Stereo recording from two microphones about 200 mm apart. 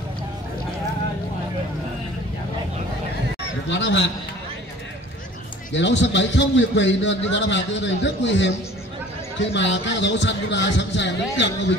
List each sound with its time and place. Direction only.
3.6 s a man's voice: 60° left (ahead or behind)
5.7 s a man's voice: 65° left (ahead or behind)